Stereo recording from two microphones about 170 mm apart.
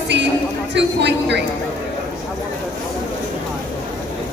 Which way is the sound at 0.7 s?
90° right.